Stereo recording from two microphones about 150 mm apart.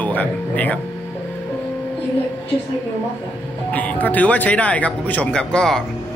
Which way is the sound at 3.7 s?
10° left (ahead or behind).